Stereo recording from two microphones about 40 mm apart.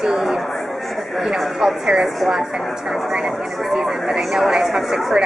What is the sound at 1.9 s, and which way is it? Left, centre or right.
Speech, centre.